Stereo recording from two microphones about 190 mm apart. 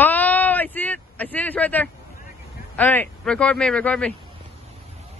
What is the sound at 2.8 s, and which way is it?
Speech, 10° left (ahead or behind).